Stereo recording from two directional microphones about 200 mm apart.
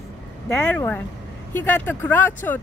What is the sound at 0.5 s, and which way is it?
Speech, 5° left (ahead or behind).